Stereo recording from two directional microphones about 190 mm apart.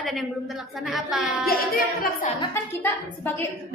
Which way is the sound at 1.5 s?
50° left (ahead or behind).